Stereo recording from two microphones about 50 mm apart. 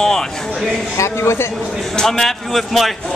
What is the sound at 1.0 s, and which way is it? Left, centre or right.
Speech, left.